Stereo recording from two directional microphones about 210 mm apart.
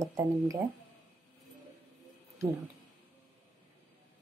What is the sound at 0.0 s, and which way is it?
Speech, 15° right (ahead or behind).